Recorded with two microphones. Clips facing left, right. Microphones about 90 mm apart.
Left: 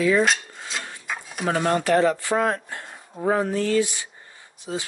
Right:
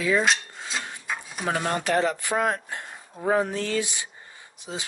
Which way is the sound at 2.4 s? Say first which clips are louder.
Left 2 dB; 20° right (ahead or behind).